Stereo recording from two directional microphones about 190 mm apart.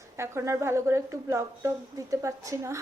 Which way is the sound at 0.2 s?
15° right (ahead or behind).